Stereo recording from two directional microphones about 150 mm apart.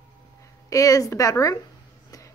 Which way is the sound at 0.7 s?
25° left (ahead or behind).